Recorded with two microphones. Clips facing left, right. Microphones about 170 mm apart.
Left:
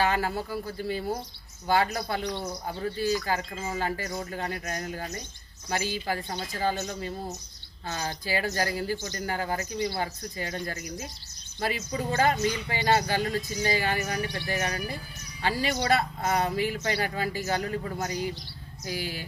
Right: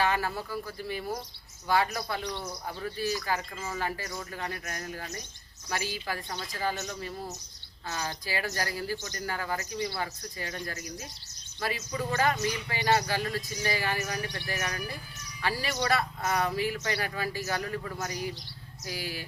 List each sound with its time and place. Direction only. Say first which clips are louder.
0.0 s speech: left 2 dB; 30° left (ahead or behind)